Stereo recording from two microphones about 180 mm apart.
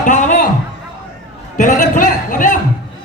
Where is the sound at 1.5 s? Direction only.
45° left (ahead or behind).